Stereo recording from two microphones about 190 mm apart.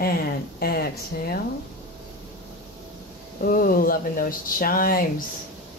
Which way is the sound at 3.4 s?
50° left (ahead or behind).